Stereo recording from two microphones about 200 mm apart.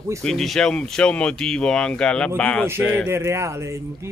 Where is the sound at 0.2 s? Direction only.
Centre (ahead or behind).